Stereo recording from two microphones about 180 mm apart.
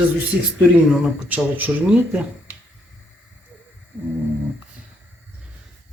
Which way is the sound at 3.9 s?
10° right (ahead or behind).